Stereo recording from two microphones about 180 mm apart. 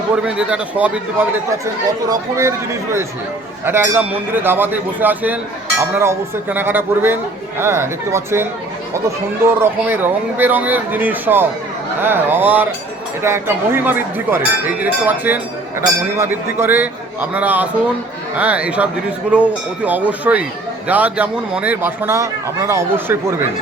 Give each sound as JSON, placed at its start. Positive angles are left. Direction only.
{"t": 0.3, "sound": "speech", "side_deg": -5}
{"t": 3.7, "sound": "speech", "side_deg": -10}